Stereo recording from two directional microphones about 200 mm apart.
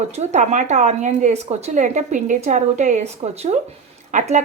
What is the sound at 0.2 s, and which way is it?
Speech, 35° right (ahead or behind).